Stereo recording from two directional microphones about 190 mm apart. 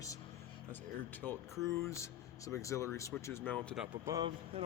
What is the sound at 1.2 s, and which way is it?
Speech, 15° right (ahead or behind).